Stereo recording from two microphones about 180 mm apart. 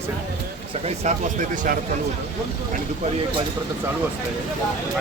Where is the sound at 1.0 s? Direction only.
40° right (ahead or behind).